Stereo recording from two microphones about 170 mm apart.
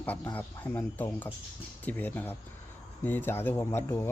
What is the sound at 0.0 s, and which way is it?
Speech, 10° left (ahead or behind).